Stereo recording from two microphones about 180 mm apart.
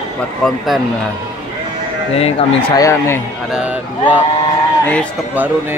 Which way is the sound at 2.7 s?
15° left (ahead or behind).